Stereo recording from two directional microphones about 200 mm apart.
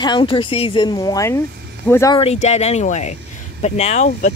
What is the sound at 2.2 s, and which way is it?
Speech, 30° left (ahead or behind).